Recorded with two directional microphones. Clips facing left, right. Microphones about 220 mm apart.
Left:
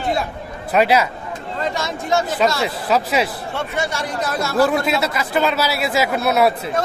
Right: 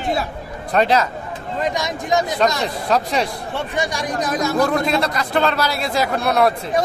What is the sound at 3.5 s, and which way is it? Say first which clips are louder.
Speech: even; 15° right (ahead or behind).